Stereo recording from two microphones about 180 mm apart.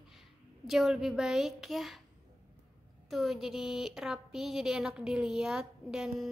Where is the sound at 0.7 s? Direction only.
5° right (ahead or behind).